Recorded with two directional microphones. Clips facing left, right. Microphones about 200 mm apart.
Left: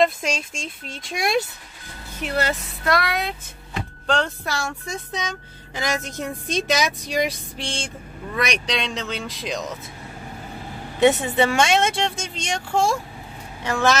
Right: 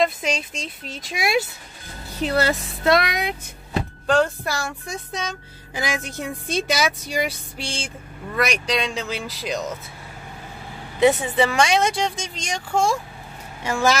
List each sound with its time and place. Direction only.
0.0 s speech: centre (ahead or behind)
2.1 s a woman's voice: 30° right (ahead or behind); by 9.7 s centre (ahead or behind)
11.0 s a woman's voice: centre (ahead or behind)